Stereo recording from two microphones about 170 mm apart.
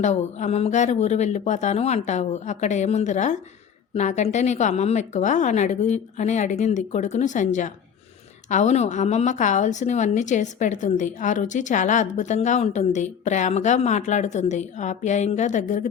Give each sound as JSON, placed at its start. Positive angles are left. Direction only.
{"t": 0.0, "sound": "a woman's voice", "side_deg": 45}